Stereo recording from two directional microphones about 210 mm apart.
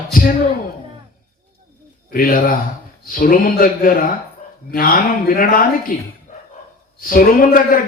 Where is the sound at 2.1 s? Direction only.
45° left (ahead or behind).